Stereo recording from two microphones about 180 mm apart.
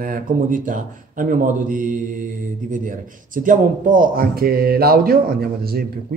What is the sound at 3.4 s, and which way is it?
A man's voice, 45° right (ahead or behind).